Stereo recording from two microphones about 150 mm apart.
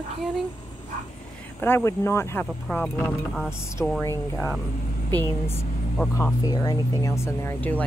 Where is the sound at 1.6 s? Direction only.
15° left (ahead or behind).